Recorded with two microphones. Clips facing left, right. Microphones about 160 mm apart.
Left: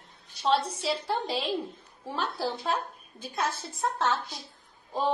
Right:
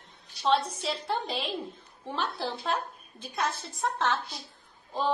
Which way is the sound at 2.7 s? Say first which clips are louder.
Even; 25° left (ahead or behind).